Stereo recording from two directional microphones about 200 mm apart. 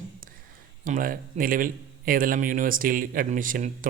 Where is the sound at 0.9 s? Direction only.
45° right (ahead or behind).